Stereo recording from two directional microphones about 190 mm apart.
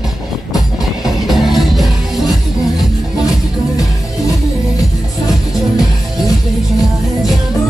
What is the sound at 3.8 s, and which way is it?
Music, 15° left (ahead or behind).